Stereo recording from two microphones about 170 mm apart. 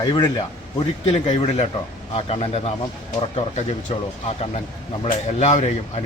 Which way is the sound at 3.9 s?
40° left (ahead or behind).